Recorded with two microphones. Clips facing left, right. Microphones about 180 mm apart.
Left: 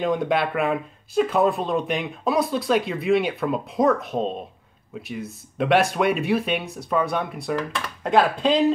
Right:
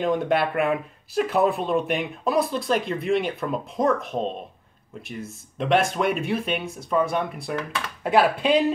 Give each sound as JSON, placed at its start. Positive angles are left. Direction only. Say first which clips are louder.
{"t": 0.0, "sound": "speech", "louder": "even", "side_deg": 0}
{"t": 5.6, "sound": "speech", "louder": "left 2 dB", "side_deg": 0}